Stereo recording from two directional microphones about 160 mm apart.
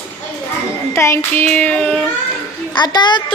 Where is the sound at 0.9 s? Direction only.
15° left (ahead or behind).